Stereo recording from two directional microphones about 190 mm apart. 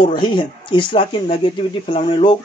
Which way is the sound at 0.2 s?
25° left (ahead or behind).